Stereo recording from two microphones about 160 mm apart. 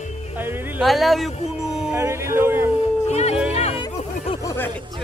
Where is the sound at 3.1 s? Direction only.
45° left (ahead or behind).